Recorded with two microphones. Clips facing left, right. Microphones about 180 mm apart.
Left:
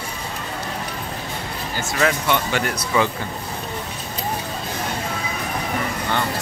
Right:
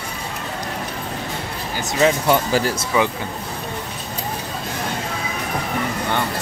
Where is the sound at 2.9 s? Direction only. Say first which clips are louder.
Right 1 dB; 15° right (ahead or behind).